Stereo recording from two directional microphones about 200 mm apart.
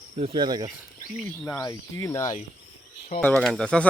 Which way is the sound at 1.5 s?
15° left (ahead or behind).